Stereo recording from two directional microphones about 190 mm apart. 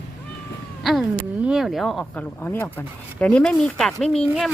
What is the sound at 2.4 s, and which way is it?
Speech, 10° left (ahead or behind).